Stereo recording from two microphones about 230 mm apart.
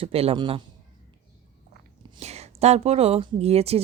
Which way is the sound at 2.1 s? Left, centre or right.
Right.